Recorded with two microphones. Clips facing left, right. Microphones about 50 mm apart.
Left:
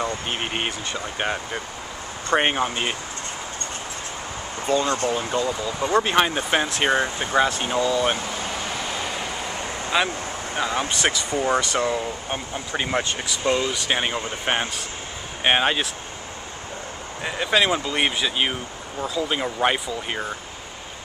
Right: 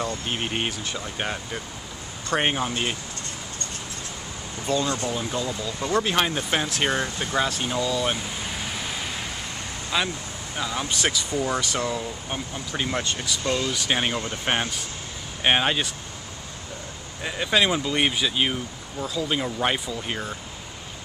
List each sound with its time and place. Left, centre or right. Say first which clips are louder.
0.0 s speech: left 2 dB; centre
4.8 s speech: left 4 dB; left
5.1 s speech: left 4 dB; centre
9.8 s speech: left 3 dB; left
10.5 s speech: left 3 dB; left
13.7 s speech: left 1 dB; centre
14.1 s speech: left 1 dB; left
14.4 s speech: left 2 dB; centre
17.2 s speech: left 1 dB; centre
19.0 s speech: left 2 dB; centre